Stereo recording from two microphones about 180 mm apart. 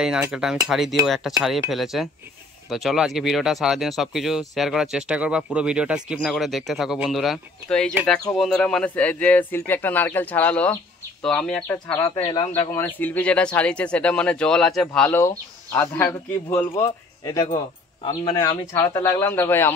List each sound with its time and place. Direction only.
0.0 s speech: 5° right (ahead or behind); by 12.6 s 20° left (ahead or behind)
12.7 s speech: 10° left (ahead or behind)